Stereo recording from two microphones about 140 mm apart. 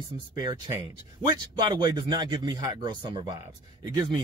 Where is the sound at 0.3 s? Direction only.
25° right (ahead or behind).